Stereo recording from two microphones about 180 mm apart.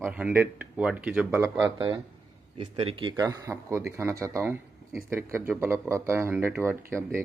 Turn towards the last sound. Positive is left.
turn(degrees=-15)  # may be behind; listen again after turning